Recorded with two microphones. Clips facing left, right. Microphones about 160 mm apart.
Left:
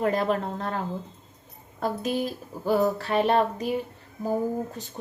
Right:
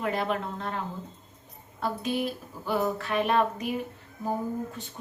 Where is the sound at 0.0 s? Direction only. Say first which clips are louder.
Left 4 dB; 40° left (ahead or behind).